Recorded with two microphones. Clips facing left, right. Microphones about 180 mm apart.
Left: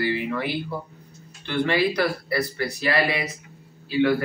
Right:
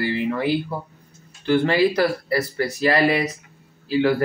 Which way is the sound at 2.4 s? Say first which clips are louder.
Right 5 dB; 40° right (ahead or behind).